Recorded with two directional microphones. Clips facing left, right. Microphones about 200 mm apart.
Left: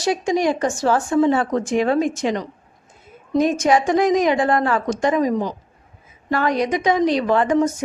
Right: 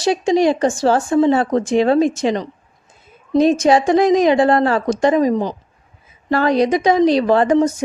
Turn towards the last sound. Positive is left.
turn(degrees=-35)  # may be behind; listen again after turning